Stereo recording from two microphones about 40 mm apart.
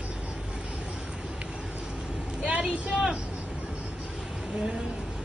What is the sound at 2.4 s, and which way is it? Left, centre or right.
Vehicle, right.